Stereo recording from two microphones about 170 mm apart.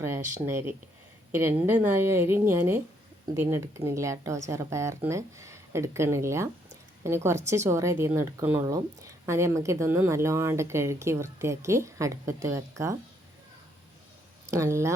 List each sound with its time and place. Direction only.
0.0 s a woman's voice: 15° right (ahead or behind)
14.4 s speech: 15° right (ahead or behind)